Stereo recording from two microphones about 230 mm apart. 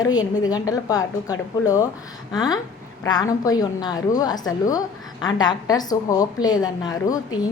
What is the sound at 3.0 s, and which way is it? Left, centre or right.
A woman's voice, centre.